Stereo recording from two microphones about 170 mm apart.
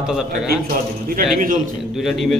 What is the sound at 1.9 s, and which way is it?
Speech, centre (ahead or behind).